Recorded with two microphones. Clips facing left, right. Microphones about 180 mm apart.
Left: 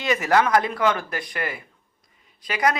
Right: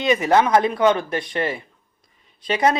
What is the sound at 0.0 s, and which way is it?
Speech, 20° right (ahead or behind).